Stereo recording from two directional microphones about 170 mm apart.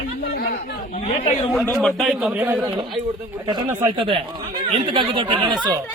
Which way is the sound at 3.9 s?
30° right (ahead or behind).